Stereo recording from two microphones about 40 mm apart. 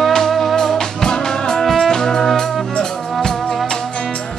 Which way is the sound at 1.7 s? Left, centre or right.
Centre.